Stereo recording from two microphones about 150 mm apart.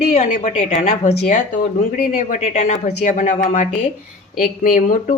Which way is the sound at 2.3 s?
55° left (ahead or behind).